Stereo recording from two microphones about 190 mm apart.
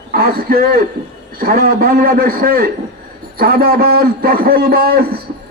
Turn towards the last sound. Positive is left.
turn(degrees=-55)  # may be behind; listen again after turning